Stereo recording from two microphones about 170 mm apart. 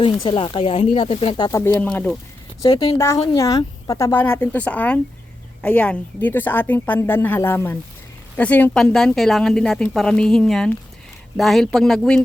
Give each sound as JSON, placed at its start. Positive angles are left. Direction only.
{"t": 0.0, "sound": "speech", "side_deg": 25}
{"t": 1.5, "sound": "speech", "side_deg": 20}
{"t": 2.6, "sound": "a woman's voice", "side_deg": 25}